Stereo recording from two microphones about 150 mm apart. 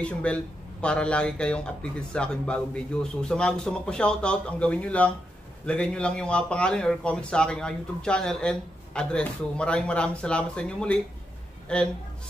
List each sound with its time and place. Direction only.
0.0 s a man's voice: 10° left (ahead or behind)